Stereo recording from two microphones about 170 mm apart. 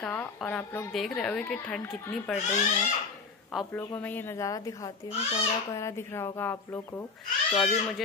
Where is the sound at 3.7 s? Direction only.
15° left (ahead or behind).